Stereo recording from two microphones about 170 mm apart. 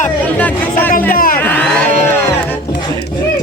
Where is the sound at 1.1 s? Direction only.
55° left (ahead or behind).